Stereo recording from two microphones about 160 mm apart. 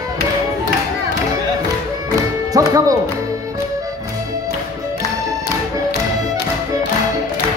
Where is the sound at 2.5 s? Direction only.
20° right (ahead or behind).